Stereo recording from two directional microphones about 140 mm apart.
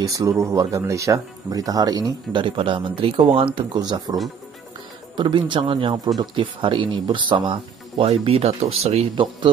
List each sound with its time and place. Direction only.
0.0 s speech: 25° right (ahead or behind); by 9.0 s 50° right (ahead or behind)
9.1 s speech: 35° right (ahead or behind)